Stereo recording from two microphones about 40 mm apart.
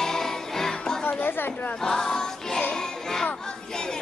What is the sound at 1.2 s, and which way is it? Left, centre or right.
Chatter, left.